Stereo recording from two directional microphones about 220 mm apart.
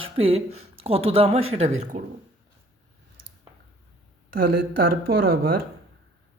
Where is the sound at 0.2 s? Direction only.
25° right (ahead or behind).